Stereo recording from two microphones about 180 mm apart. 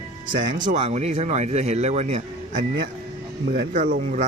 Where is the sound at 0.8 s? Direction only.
35° right (ahead or behind).